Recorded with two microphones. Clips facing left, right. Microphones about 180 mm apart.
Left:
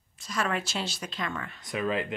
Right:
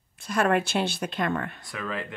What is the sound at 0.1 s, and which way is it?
Speech, 55° right (ahead or behind).